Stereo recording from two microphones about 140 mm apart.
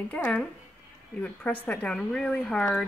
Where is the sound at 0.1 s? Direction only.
5° left (ahead or behind).